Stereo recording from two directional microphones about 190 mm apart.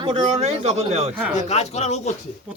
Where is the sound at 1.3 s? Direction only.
35° left (ahead or behind).